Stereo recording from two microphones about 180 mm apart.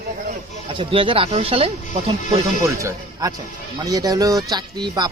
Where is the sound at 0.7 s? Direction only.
30° right (ahead or behind).